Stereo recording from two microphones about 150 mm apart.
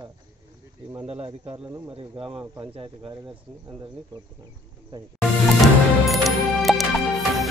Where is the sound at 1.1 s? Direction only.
40° right (ahead or behind).